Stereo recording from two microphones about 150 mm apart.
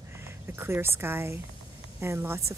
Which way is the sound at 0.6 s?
15° right (ahead or behind).